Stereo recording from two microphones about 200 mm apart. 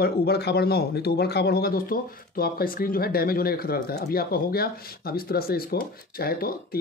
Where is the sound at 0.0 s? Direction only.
55° left (ahead or behind).